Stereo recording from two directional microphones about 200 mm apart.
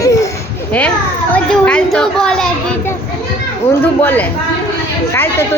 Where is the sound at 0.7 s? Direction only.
10° left (ahead or behind).